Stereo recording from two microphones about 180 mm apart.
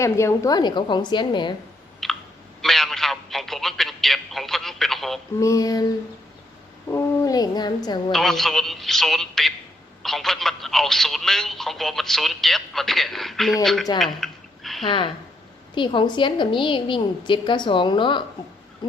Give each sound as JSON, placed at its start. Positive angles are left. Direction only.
{"t": 0.0, "sound": "a woman's voice", "side_deg": 15}
{"t": 2.0, "sound": "clicking", "side_deg": 0}
{"t": 2.6, "sound": "a sound", "side_deg": 0}
{"t": 5.4, "sound": "a woman's voice", "side_deg": 20}
{"t": 8.1, "sound": "speech", "side_deg": 0}
{"t": 14.0, "sound": "a sound", "side_deg": 0}
{"t": 14.8, "sound": "a woman's voice", "side_deg": 30}